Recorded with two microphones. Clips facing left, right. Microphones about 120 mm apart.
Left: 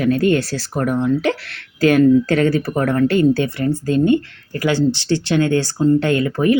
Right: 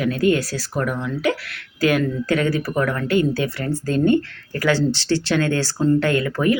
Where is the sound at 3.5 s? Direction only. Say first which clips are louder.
Left 4 dB; 20° left (ahead or behind).